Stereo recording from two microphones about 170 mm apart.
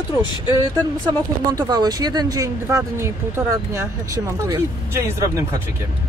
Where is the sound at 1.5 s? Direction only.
20° right (ahead or behind).